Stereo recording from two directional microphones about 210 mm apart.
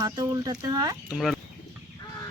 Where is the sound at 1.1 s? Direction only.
Centre (ahead or behind).